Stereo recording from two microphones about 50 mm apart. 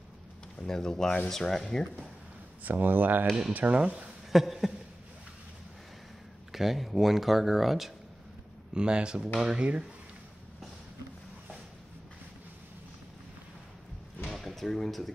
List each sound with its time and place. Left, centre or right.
0.7 s speech: centre
2.6 s speech: right
3.8 s speech: right
4.3 s speech: centre
6.5 s speech: centre
8.7 s speech: centre
14.3 s basketball bounce: centre